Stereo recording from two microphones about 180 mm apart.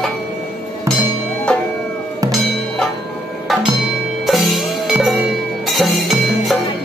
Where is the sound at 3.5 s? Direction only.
Centre (ahead or behind).